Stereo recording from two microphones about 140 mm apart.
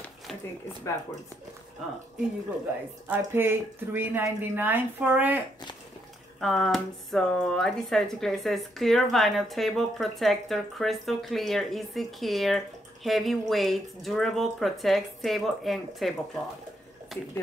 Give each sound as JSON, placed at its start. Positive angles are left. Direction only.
{"t": 0.9, "sound": "speech", "side_deg": 20}
{"t": 3.1, "sound": "speech", "side_deg": -15}
{"t": 6.4, "sound": "speech", "side_deg": 0}